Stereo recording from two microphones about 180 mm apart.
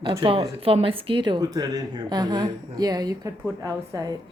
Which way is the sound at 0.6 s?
30° right (ahead or behind).